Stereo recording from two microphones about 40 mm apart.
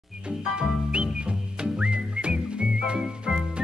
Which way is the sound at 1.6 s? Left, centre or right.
Right.